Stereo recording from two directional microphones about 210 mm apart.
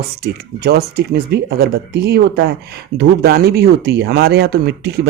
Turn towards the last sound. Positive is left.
turn(degrees=-50)  # may be behind; listen again after turning